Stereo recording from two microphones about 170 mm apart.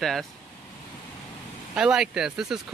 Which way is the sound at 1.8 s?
5° right (ahead or behind).